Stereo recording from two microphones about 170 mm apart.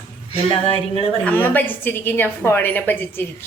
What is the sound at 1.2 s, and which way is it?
A woman's voice, 10° left (ahead or behind).